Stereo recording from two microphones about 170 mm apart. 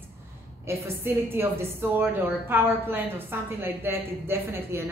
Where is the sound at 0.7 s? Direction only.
15° right (ahead or behind).